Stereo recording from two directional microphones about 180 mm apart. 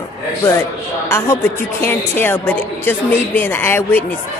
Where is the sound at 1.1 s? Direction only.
15° left (ahead or behind).